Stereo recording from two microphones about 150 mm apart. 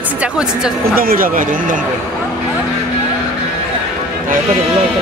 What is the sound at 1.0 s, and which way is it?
Speech, 70° right (ahead or behind).